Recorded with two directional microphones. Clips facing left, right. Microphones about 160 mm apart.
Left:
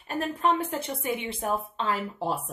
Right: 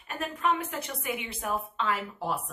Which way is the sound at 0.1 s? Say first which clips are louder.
Left 3 dB; 30° left (ahead or behind).